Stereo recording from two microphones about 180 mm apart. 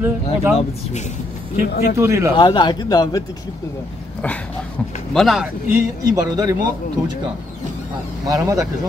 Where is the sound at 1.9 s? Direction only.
15° right (ahead or behind).